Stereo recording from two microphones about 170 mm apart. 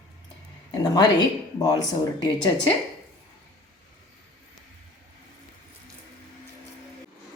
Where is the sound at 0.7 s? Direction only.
25° left (ahead or behind).